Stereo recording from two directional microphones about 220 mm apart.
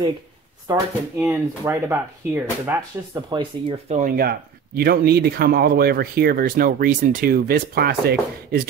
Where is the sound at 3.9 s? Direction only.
40° right (ahead or behind).